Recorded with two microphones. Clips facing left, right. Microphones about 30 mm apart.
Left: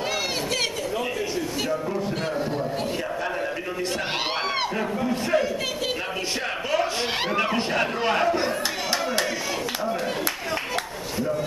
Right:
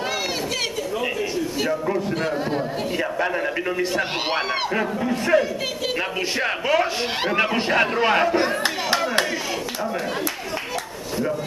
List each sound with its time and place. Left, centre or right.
4.7 s a man's voice: centre
6.7 s a man's voice: centre